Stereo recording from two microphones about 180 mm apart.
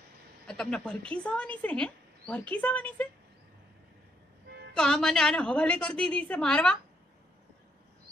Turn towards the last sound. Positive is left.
turn(degrees=5)  # may be behind; listen again after turning